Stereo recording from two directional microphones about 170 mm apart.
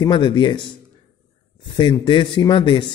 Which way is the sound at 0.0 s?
30° left (ahead or behind).